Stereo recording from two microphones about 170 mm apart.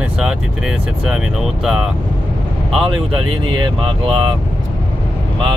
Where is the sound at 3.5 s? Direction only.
30° right (ahead or behind).